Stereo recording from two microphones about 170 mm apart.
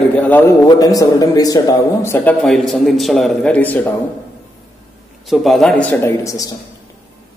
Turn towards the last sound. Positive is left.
turn(degrees=20)  # may be behind; listen again after turning